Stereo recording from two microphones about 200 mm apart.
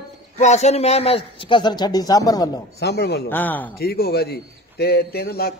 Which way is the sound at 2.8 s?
55° left (ahead or behind).